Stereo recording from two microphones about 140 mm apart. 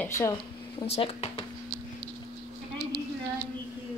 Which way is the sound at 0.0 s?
20° left (ahead or behind).